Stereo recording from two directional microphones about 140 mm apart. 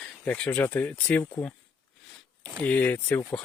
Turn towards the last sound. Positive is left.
turn(degrees=15)  # may be behind; listen again after turning